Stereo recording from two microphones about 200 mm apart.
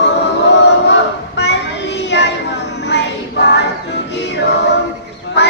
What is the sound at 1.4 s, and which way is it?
Child singing, 60° left (ahead or behind).